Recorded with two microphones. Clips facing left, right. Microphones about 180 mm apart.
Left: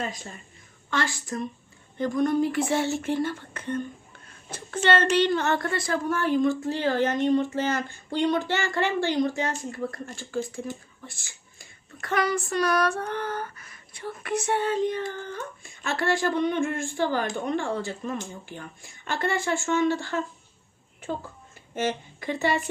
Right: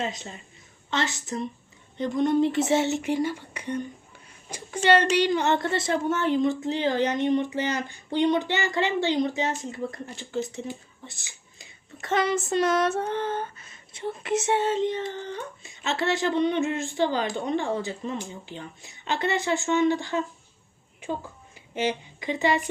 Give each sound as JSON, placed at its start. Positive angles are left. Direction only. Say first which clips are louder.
{"t": 0.0, "sound": "a woman's voice", "louder": "right 2 dB", "side_deg": -25}